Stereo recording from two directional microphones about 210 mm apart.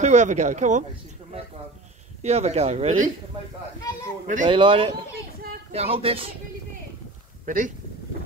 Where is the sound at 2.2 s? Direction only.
30° right (ahead or behind).